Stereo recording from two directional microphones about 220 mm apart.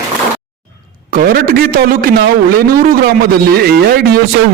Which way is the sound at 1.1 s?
40° right (ahead or behind).